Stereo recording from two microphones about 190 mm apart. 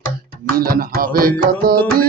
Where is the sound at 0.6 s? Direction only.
50° right (ahead or behind).